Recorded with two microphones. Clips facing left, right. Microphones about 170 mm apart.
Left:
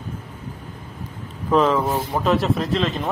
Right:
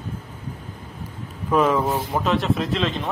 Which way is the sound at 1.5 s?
10° right (ahead or behind).